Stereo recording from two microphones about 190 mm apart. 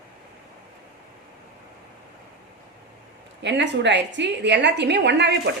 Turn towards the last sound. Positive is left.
turn(degrees=-65)  # may be behind; listen again after turning